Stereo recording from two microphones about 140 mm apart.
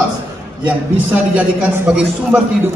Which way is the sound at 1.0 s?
15° right (ahead or behind).